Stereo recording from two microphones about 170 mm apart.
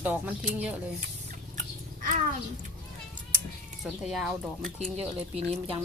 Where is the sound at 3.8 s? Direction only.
Centre (ahead or behind).